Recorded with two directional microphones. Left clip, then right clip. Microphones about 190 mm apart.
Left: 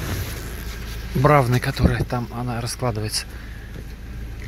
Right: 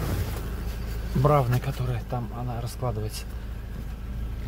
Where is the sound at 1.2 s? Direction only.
20° left (ahead or behind).